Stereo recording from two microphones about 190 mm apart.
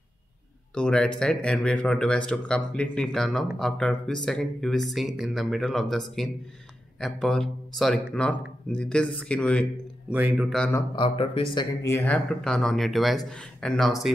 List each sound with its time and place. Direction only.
0.7 s speech: 5° left (ahead or behind)
10.0 s speech: 5° right (ahead or behind)
11.0 s speech: 30° left (ahead or behind)
11.8 s speech: 10° left (ahead or behind)